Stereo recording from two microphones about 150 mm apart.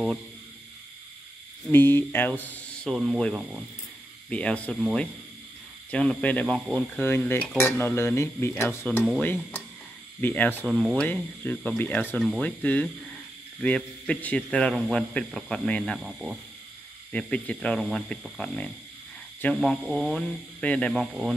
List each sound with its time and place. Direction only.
1.7 s speech: 15° left (ahead or behind)
2.9 s speech: centre (ahead or behind)
5.9 s speech: 10° left (ahead or behind)
7.0 s speech: 15° left (ahead or behind)
10.7 s speech: 5° right (ahead or behind)
11.0 s speech: 10° left (ahead or behind)
17.1 s speech: 10° left (ahead or behind)
20.9 s speech: 5° right (ahead or behind)